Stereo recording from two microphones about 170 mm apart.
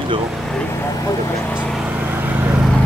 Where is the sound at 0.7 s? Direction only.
15° left (ahead or behind).